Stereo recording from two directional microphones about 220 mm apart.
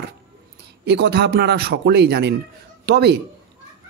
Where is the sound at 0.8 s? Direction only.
50° right (ahead or behind).